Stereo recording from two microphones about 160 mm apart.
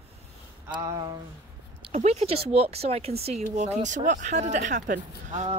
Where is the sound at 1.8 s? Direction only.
40° right (ahead or behind).